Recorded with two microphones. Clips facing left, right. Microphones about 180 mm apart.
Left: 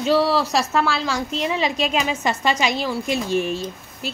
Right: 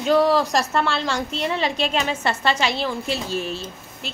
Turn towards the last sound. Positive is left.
turn(degrees=15)  # may be behind; listen again after turning